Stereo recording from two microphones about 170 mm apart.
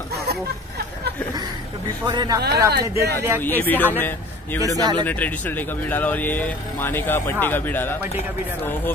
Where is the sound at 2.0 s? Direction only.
25° right (ahead or behind).